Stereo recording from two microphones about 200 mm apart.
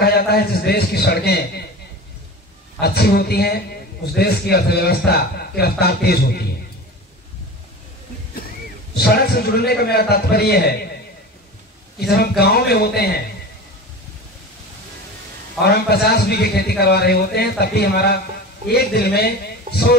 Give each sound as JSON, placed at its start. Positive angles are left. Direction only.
{"t": 0.0, "sound": "a man's voice", "side_deg": 50}
{"t": 2.8, "sound": "a man's voice", "side_deg": 50}
{"t": 8.9, "sound": "a man's voice", "side_deg": 50}
{"t": 12.2, "sound": "a man's voice", "side_deg": 50}
{"t": 15.6, "sound": "a man's voice", "side_deg": 55}